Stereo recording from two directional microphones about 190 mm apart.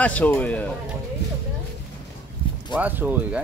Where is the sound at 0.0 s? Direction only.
10° left (ahead or behind).